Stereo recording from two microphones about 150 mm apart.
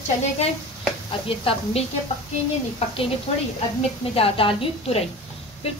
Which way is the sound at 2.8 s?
45° left (ahead or behind).